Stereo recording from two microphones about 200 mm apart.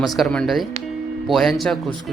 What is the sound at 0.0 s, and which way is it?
Speech, centre (ahead or behind).